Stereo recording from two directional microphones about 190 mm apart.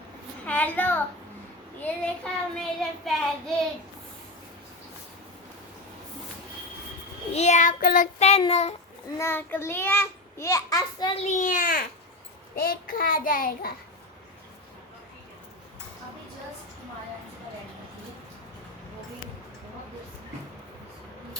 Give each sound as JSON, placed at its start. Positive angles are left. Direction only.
{"t": 0.4, "sound": "a child's voice", "side_deg": 10}
{"t": 1.8, "sound": "child singing", "side_deg": 5}
{"t": 7.3, "sound": "child singing", "side_deg": 40}
{"t": 9.1, "sound": "a child's voice", "side_deg": 10}